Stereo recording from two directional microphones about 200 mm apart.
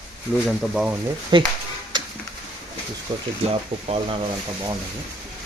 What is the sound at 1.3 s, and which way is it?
Speech, 25° right (ahead or behind).